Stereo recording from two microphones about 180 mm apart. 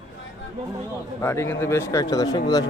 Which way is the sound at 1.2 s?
15° left (ahead or behind).